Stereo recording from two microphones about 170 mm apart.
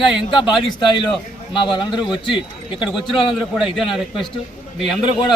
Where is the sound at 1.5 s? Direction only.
30° left (ahead or behind).